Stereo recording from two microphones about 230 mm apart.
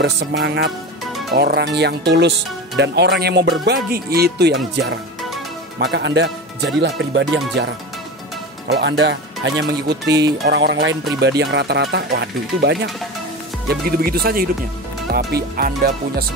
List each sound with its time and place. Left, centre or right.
0.0 s speech: right
5.8 s speech: right
8.6 s speech: right